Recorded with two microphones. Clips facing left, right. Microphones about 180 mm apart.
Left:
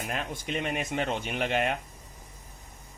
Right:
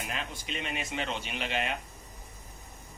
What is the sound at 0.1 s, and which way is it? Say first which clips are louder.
Speech: left 5 dB; 50° left (ahead or behind).